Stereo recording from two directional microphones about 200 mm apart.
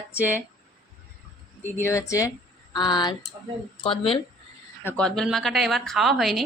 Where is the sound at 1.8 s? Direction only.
15° left (ahead or behind).